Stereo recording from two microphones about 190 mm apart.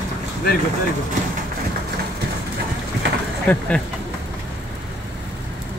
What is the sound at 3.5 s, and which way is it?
Speech, 10° left (ahead or behind).